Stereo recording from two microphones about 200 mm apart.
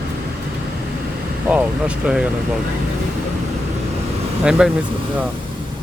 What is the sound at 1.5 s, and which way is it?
Speech, 5° right (ahead or behind).